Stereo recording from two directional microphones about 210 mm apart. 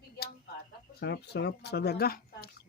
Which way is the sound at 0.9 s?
50° left (ahead or behind).